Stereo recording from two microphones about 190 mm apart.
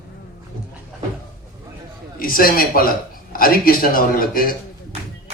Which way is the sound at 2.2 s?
50° left (ahead or behind).